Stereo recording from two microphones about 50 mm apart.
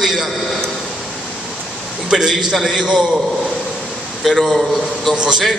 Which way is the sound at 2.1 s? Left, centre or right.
Centre.